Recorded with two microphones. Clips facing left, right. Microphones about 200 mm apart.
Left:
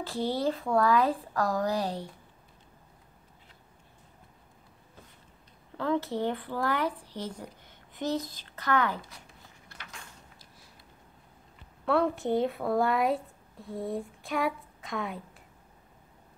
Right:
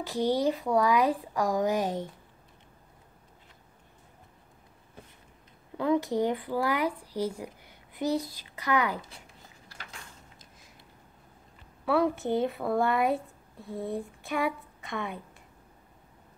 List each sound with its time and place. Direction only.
0.0 s speech: 15° right (ahead or behind)
5.8 s speech: 15° right (ahead or behind)
11.8 s a woman's voice: 5° right (ahead or behind)